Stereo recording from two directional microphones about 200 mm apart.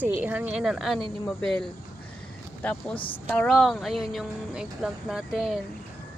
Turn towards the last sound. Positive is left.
turn(degrees=0)  # may be behind; listen again after turning